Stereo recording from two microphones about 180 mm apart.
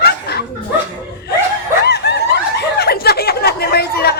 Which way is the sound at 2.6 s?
65° left (ahead or behind).